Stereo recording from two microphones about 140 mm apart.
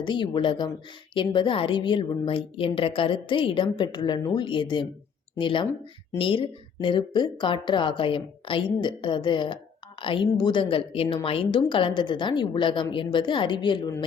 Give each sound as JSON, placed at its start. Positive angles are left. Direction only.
{"t": 0.0, "sound": "a woman's voice", "side_deg": 35}